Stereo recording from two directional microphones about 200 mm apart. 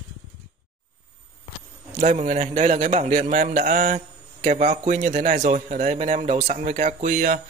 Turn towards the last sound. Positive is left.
turn(degrees=-40)  # may be behind; listen again after turning